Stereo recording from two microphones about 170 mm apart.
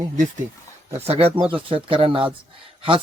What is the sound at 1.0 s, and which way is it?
Speech, 35° right (ahead or behind).